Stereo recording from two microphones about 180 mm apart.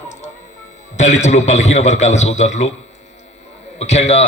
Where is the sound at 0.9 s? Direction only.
40° left (ahead or behind).